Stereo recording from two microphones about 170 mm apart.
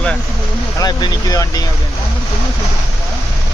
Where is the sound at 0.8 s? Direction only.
25° left (ahead or behind).